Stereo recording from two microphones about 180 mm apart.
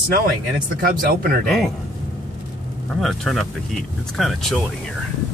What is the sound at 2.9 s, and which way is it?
Speech, centre (ahead or behind).